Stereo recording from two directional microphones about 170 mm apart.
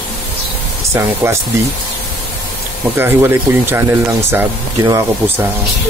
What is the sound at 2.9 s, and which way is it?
Speech, 15° right (ahead or behind).